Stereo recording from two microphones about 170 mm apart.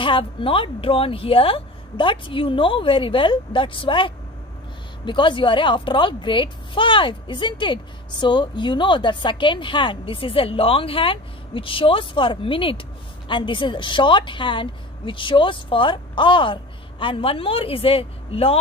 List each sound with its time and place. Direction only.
0.0 s a woman's voice: 30° left (ahead or behind)